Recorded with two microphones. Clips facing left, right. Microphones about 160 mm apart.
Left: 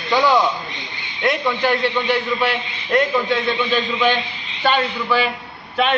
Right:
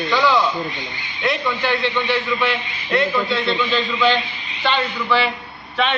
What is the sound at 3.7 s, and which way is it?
Speech, 15° left (ahead or behind).